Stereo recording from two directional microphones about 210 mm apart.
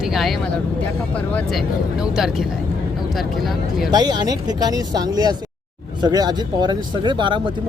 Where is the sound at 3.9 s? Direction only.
20° right (ahead or behind).